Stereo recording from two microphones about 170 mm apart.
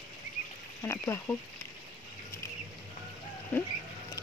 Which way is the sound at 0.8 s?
15° left (ahead or behind).